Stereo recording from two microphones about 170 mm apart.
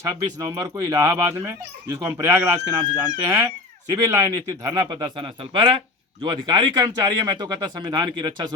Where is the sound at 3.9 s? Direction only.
20° right (ahead or behind).